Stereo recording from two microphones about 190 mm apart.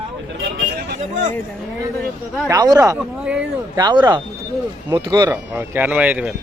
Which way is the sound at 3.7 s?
25° right (ahead or behind).